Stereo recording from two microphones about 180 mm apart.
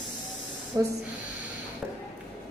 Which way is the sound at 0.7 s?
20° right (ahead or behind).